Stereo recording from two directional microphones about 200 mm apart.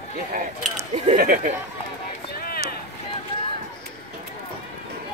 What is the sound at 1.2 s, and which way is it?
Speech, 45° right (ahead or behind).